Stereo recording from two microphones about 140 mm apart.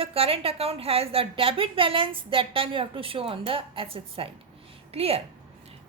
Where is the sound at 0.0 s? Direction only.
45° right (ahead or behind).